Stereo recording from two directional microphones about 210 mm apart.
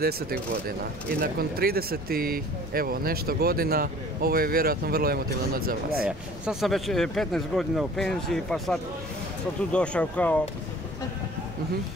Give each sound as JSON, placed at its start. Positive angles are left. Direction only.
{"t": 0.0, "sound": "speech", "side_deg": -45}
{"t": 6.0, "sound": "speech", "side_deg": -5}